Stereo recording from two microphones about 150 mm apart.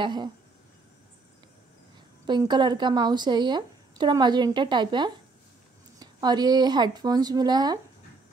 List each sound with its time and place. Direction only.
0.0 s speech: 30° right (ahead or behind)
2.2 s speech: 30° right (ahead or behind)